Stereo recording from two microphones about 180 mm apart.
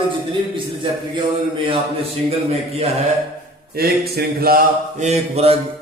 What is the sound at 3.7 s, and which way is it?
Mantra, 60° right (ahead or behind).